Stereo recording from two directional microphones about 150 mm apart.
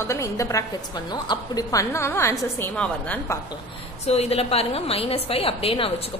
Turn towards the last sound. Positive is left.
turn(degrees=40)  # may be behind; listen again after turning